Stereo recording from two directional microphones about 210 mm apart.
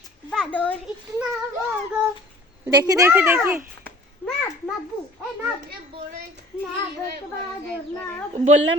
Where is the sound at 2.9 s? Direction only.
10° right (ahead or behind).